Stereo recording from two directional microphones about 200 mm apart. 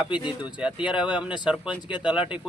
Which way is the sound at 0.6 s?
5° right (ahead or behind).